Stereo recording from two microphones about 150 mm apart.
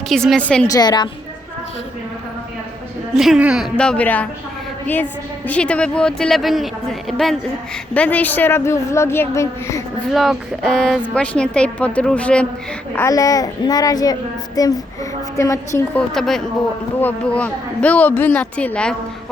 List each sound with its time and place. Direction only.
0.1 s speech: 5° left (ahead or behind)
0.7 s a child's voice: 30° left (ahead or behind)
3.2 s speech: 5° right (ahead or behind)
3.8 s a woman's voice: 10° left (ahead or behind)
5.5 s a woman's voice: 10° left (ahead or behind)
10.1 s a woman's voice: centre (ahead or behind)
13.0 s a child's voice: 20° left (ahead or behind)
16.0 s a woman's voice: centre (ahead or behind)